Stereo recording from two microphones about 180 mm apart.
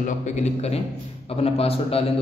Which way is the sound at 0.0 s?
40° left (ahead or behind).